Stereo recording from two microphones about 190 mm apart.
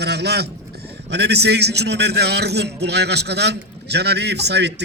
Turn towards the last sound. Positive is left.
turn(degrees=-65)  # may be behind; listen again after turning